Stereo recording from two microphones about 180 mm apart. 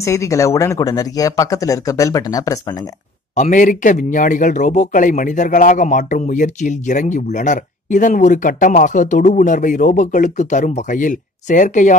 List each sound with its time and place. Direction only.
0.0 s speech: 15° left (ahead or behind)
3.3 s speech: 45° left (ahead or behind)